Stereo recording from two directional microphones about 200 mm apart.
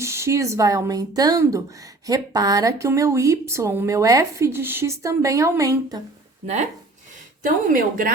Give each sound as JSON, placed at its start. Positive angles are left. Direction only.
{"t": 0.0, "sound": "speech", "side_deg": -15}
{"t": 6.4, "sound": "speech", "side_deg": -35}